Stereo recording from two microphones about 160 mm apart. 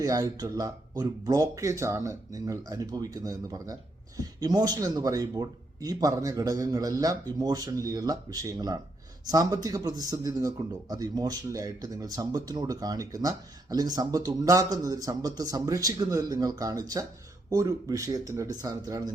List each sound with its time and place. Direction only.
0.0 s a man's voice: 20° right (ahead or behind)